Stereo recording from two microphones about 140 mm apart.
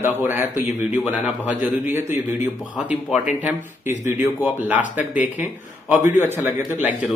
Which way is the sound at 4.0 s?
15° right (ahead or behind).